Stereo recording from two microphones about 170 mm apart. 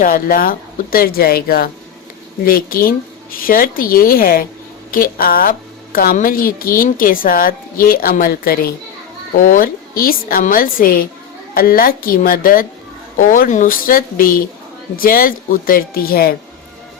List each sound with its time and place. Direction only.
0.0 s a woman's voice: 55° left (ahead or behind)